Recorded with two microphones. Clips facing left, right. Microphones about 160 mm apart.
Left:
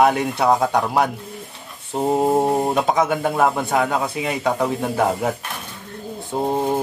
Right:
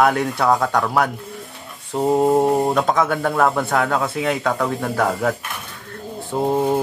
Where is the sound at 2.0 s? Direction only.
5° left (ahead or behind).